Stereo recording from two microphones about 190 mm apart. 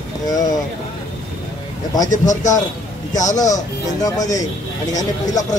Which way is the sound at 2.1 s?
40° left (ahead or behind).